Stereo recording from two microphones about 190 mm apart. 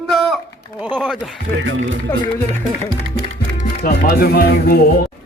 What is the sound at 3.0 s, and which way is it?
Music, 90° right.